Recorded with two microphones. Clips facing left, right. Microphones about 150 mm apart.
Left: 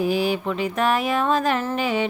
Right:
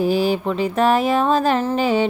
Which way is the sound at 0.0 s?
35° right (ahead or behind).